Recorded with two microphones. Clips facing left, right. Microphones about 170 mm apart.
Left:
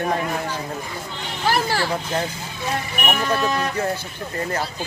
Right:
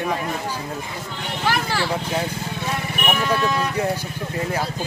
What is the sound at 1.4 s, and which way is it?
Speech, 35° left (ahead or behind).